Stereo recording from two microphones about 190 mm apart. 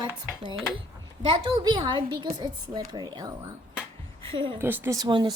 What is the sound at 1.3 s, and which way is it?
A woman's voice, 25° right (ahead or behind).